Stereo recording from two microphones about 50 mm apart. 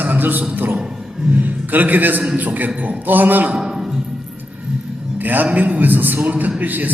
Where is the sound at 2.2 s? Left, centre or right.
Right.